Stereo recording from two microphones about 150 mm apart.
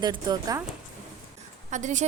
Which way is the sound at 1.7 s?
55° right (ahead or behind).